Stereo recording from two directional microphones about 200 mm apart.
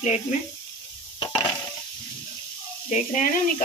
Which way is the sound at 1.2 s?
20° left (ahead or behind).